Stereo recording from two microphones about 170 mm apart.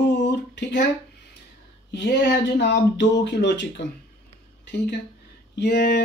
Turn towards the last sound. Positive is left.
turn(degrees=80)